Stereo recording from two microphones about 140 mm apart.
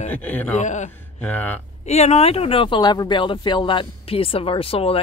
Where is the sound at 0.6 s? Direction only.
60° left (ahead or behind).